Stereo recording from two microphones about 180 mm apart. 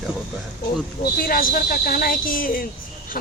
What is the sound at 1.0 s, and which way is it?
Speech, 55° left (ahead or behind).